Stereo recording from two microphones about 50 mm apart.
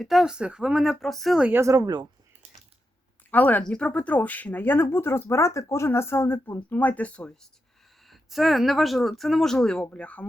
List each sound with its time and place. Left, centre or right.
0.0 s speech: centre
0.3 s speech: centre
0.8 s speech: centre
3.3 s speech: left
3.6 s speech: left
8.0 s speech: centre
9.9 s speech: left